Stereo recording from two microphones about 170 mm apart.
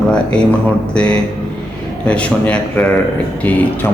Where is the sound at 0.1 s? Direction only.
5° left (ahead or behind).